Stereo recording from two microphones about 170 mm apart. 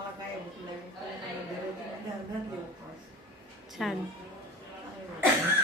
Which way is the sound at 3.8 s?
Centre (ahead or behind).